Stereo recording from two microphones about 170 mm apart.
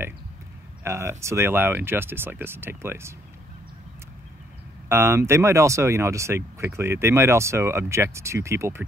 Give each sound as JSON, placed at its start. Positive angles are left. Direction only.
{"t": 0.8, "sound": "speech", "side_deg": -15}
{"t": 4.8, "sound": "speech", "side_deg": -15}